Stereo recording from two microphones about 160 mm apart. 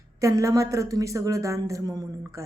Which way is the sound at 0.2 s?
20° right (ahead or behind).